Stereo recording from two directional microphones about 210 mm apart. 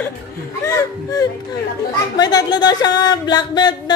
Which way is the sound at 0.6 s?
15° left (ahead or behind).